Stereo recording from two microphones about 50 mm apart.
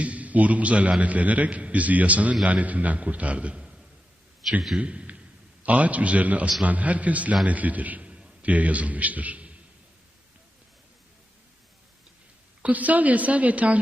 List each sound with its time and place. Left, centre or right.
0.0 s a man's voice: right
4.4 s a man's voice: centre
4.8 s a man's voice: right
12.6 s a woman's voice: right